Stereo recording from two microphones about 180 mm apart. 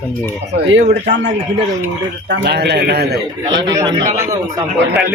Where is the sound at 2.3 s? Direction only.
70° right (ahead or behind).